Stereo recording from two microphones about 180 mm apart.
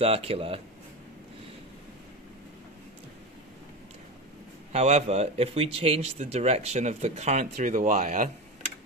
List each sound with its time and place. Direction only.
0.0 s speech: 35° right (ahead or behind)
4.7 s speech: 35° right (ahead or behind)